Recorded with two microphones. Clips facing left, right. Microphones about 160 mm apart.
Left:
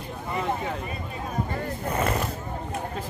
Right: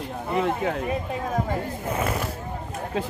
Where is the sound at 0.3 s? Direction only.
70° right (ahead or behind).